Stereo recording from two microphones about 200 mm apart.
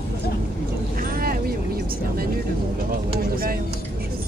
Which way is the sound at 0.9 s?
45° right (ahead or behind).